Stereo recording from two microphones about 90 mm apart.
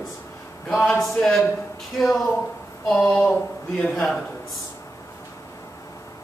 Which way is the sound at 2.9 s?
10° left (ahead or behind).